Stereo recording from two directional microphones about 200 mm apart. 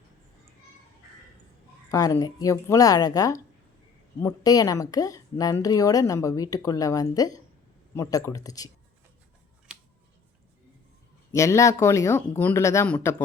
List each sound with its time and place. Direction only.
1.9 s a woman's voice: 20° left (ahead or behind)
9.7 s a sound: 5° right (ahead or behind)
11.3 s a woman's voice: 15° left (ahead or behind)